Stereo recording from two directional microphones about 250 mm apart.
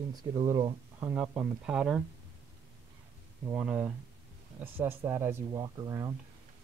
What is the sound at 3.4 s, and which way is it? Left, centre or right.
Speech, centre.